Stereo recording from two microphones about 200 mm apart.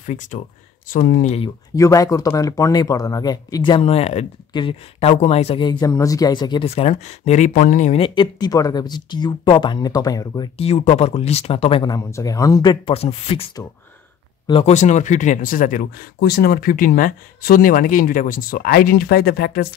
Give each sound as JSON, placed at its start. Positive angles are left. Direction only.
{"t": 0.0, "sound": "speech", "side_deg": 40}
{"t": 1.8, "sound": "speech", "side_deg": 15}
{"t": 10.6, "sound": "speech", "side_deg": 30}
{"t": 14.5, "sound": "speech", "side_deg": 35}